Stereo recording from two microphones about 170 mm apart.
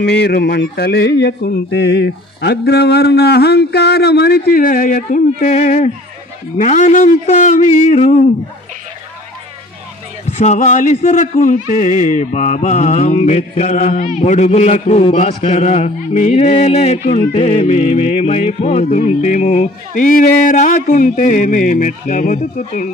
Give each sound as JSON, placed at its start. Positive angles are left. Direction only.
{"t": 0.0, "sound": "a sound", "side_deg": 75}
{"t": 6.6, "sound": "speech", "side_deg": 45}
{"t": 10.4, "sound": "speech", "side_deg": 45}
{"t": 17.3, "sound": "music", "side_deg": 40}
{"t": 20.0, "sound": "speech", "side_deg": 55}